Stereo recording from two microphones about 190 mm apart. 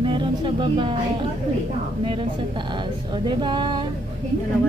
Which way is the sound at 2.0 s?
30° right (ahead or behind).